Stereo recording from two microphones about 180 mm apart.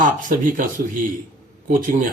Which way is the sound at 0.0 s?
45° right (ahead or behind).